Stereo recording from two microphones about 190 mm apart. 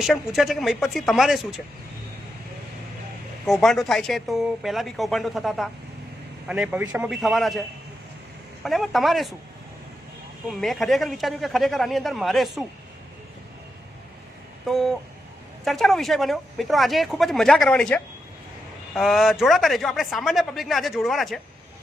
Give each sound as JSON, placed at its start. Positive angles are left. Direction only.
{"t": 0.0, "sound": "speech", "side_deg": 0}
{"t": 3.4, "sound": "speech", "side_deg": 0}
{"t": 8.6, "sound": "speech", "side_deg": 0}
{"t": 10.5, "sound": "speech", "side_deg": 0}
{"t": 14.7, "sound": "speech", "side_deg": 0}